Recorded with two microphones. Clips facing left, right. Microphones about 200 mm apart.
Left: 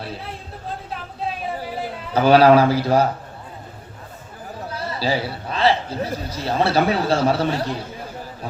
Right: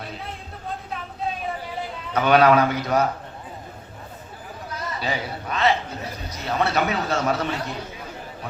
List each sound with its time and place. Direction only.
2.1 s a man's voice: 30° left (ahead or behind)
4.7 s a man's voice: 30° left (ahead or behind)